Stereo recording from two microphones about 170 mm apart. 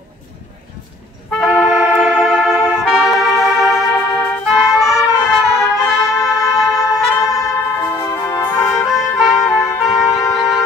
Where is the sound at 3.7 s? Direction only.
15° left (ahead or behind).